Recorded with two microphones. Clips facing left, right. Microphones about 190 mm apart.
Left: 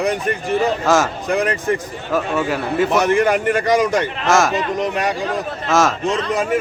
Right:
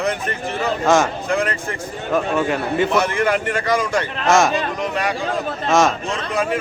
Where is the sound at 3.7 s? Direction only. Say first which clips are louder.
Left 3 dB; 20° left (ahead or behind).